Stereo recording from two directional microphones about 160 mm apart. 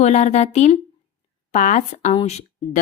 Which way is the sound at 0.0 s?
45° left (ahead or behind).